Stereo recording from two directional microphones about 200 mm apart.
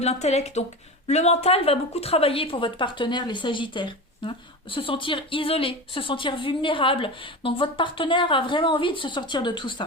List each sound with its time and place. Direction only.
0.0 s a woman's voice: 35° left (ahead or behind)